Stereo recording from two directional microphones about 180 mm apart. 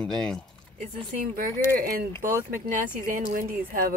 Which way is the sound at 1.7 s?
50° right (ahead or behind).